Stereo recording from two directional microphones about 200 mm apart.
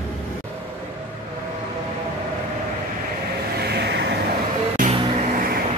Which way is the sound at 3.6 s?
55° right (ahead or behind).